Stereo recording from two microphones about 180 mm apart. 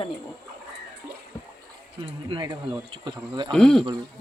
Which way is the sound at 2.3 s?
25° right (ahead or behind).